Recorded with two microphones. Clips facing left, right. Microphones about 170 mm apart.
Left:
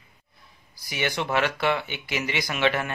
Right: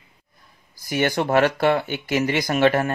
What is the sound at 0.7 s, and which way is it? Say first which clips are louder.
Speech: right 7 dB; 45° right (ahead or behind).